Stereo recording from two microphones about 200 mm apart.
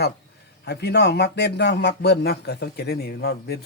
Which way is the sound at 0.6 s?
55° left (ahead or behind).